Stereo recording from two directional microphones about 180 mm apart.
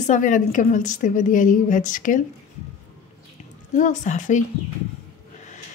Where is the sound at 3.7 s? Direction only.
45° left (ahead or behind).